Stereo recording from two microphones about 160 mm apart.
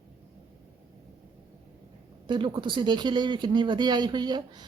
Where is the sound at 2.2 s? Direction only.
30° right (ahead or behind).